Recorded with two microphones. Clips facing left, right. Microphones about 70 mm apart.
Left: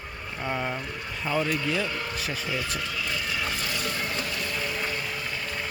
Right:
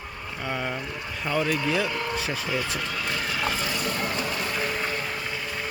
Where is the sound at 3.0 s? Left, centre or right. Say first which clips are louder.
Right 4 dB; right.